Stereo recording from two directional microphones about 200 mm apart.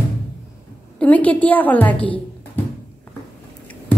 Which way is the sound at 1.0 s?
5° left (ahead or behind).